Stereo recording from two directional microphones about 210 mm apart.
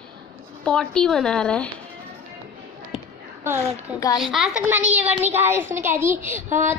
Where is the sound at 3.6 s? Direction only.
15° left (ahead or behind).